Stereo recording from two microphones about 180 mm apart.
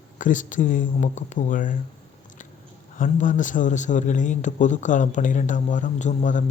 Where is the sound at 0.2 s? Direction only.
45° left (ahead or behind).